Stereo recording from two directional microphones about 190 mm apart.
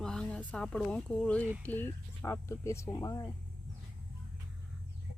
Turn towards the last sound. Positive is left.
turn(degrees=20)  # may be behind; listen again after turning